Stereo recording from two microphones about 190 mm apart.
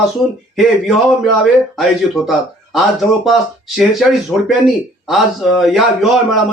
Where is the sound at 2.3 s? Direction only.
Centre (ahead or behind).